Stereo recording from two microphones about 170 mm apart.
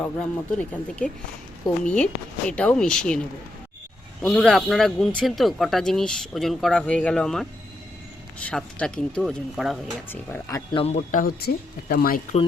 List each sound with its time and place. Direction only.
0.0 s speech: 10° left (ahead or behind)
4.2 s speech: centre (ahead or behind)
8.4 s speech: 5° left (ahead or behind)
10.1 s speech: 15° left (ahead or behind)
10.7 s a man's voice: 30° left (ahead or behind)
10.9 s speech: 50° left (ahead or behind)